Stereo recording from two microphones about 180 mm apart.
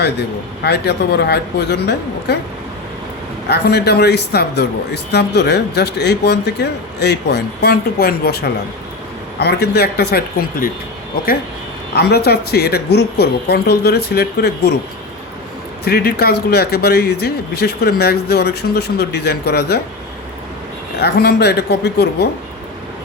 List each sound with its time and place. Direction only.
0.0 s speech: 65° left (ahead or behind)
3.5 s a man's voice: 65° left (ahead or behind)
11.9 s a man's voice: 65° left (ahead or behind)
15.8 s a man's voice: 60° left (ahead or behind)
21.0 s a man's voice: 65° left (ahead or behind)